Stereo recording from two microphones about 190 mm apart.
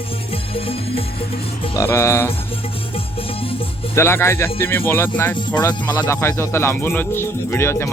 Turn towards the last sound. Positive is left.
turn(degrees=15)  # may be behind; listen again after turning